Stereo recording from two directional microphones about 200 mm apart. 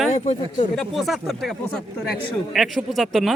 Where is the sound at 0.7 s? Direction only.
Centre (ahead or behind).